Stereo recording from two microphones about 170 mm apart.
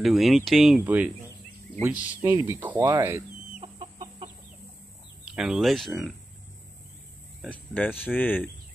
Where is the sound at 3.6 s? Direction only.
35° right (ahead or behind).